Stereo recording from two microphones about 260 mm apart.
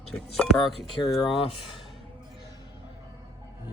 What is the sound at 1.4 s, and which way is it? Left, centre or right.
Speech, left.